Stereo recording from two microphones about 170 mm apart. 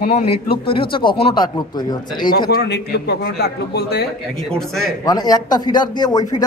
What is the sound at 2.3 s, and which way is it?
A man's voice, 60° left (ahead or behind).